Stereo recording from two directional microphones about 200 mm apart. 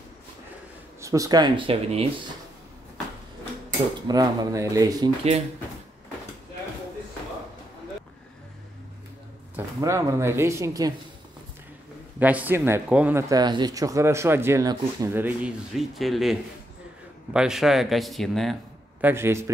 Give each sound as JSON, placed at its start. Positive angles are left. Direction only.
{"t": 1.0, "sound": "speech", "side_deg": -15}
{"t": 4.1, "sound": "speech", "side_deg": -20}
{"t": 9.8, "sound": "speech", "side_deg": -15}
{"t": 12.2, "sound": "speech", "side_deg": -10}